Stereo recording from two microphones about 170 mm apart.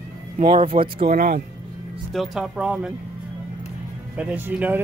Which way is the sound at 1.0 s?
65° right (ahead or behind).